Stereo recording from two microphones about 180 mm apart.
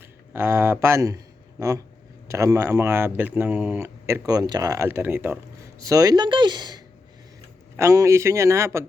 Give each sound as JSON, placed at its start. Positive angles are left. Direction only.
{"t": 0.3, "sound": "speech", "side_deg": -15}